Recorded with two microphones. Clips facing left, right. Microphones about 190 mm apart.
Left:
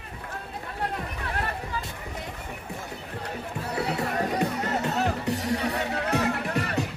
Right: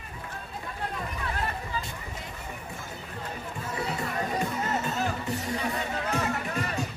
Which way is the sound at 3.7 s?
65° left (ahead or behind).